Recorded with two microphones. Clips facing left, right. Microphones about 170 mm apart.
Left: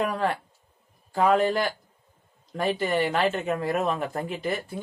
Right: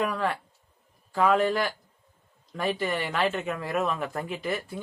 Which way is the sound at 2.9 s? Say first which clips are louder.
Left 4 dB; 40° left (ahead or behind).